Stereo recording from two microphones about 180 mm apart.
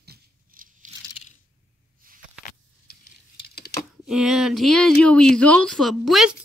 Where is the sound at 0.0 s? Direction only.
60° right (ahead or behind).